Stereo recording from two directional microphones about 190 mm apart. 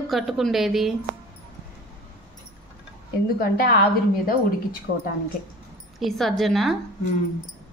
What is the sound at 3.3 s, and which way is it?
Speech, 50° left (ahead or behind).